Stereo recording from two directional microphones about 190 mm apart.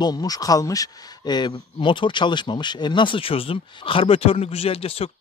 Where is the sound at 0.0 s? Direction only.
20° left (ahead or behind).